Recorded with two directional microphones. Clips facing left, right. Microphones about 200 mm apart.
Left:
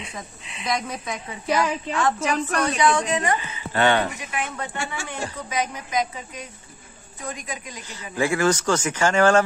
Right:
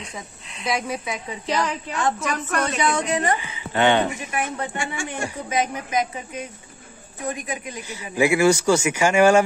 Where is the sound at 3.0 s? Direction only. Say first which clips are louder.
Right 1 dB; 35° right (ahead or behind).